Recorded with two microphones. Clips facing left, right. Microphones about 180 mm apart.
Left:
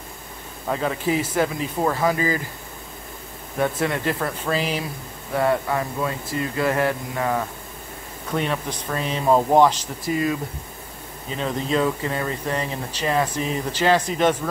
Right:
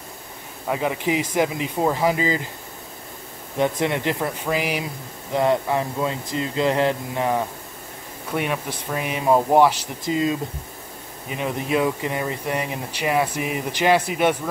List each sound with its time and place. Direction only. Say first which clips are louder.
0.7 s speech: even; 15° right (ahead or behind)
3.5 s speech: right 1 dB; 20° right (ahead or behind)
11.2 s speech: even; 15° right (ahead or behind)